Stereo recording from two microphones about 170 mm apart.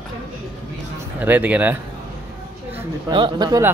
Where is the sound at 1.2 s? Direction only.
10° right (ahead or behind).